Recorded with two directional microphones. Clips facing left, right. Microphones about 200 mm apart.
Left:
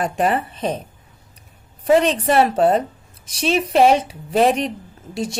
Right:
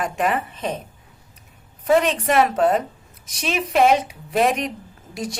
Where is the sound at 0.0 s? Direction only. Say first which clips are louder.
Left 3 dB; 35° left (ahead or behind).